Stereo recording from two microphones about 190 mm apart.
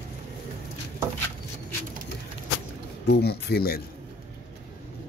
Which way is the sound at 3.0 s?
60° left (ahead or behind).